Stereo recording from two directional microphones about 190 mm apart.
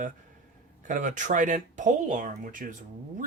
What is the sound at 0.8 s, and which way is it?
Speech, 40° right (ahead or behind).